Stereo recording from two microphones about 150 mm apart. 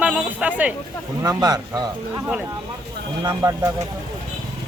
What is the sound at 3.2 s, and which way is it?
Speech, 20° right (ahead or behind).